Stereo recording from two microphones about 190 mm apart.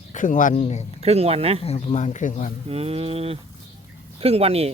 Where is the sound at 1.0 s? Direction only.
30° right (ahead or behind).